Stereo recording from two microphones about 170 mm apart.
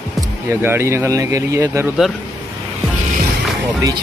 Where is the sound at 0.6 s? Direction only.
15° right (ahead or behind).